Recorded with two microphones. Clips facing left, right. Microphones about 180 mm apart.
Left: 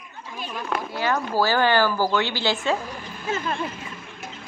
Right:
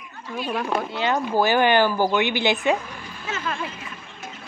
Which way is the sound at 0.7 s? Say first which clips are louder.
Left 1 dB; 25° right (ahead or behind).